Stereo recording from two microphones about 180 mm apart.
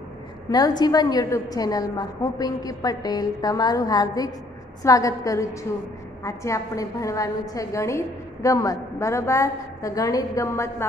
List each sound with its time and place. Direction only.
0.5 s a woman's voice: 20° left (ahead or behind)